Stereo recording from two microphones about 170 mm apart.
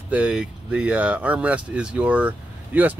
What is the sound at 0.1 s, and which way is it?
Speech, 5° right (ahead or behind).